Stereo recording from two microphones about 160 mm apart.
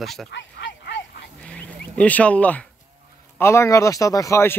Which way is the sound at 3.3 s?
15° left (ahead or behind).